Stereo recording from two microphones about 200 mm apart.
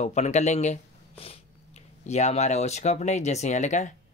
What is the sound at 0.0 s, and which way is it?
Speech, 35° left (ahead or behind).